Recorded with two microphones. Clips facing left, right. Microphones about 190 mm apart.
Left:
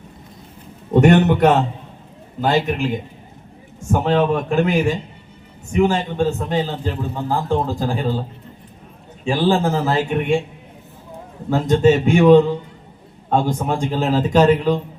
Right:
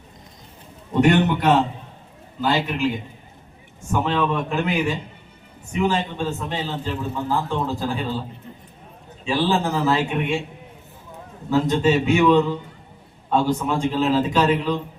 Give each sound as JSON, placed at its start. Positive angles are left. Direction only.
{"t": 1.0, "sound": "a man's voice", "side_deg": 50}
{"t": 3.9, "sound": "a man's voice", "side_deg": 45}
{"t": 9.2, "sound": "a man's voice", "side_deg": 45}
{"t": 11.5, "sound": "a man's voice", "side_deg": 45}